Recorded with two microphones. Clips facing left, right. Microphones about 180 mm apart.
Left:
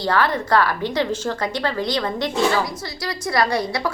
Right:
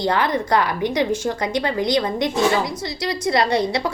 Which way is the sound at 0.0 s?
20° right (ahead or behind).